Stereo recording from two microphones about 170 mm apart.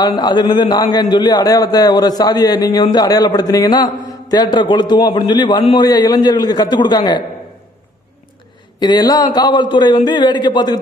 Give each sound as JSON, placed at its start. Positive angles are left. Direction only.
{"t": 0.0, "sound": "a man's voice", "side_deg": 25}
{"t": 8.7, "sound": "a man's voice", "side_deg": 25}